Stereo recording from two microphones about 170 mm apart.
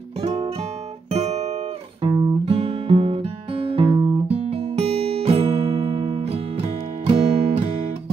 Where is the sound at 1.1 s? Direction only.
40° right (ahead or behind).